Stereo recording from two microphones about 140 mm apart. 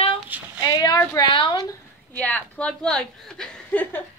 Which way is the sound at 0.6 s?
30° left (ahead or behind).